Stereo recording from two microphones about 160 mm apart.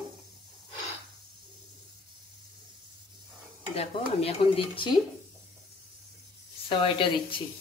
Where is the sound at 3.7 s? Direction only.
40° left (ahead or behind).